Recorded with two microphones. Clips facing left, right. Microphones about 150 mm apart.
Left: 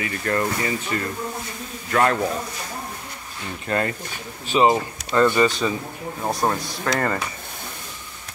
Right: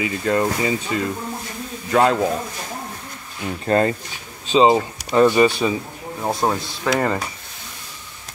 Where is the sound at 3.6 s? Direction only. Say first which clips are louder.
Right 6 dB; 30° right (ahead or behind); by 7.0 s 15° right (ahead or behind).